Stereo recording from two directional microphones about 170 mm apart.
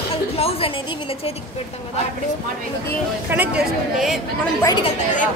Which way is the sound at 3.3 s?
5° right (ahead or behind).